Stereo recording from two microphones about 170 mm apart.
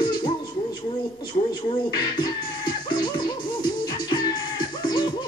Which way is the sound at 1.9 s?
25° left (ahead or behind).